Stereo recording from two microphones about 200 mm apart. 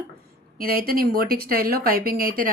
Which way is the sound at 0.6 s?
50° right (ahead or behind).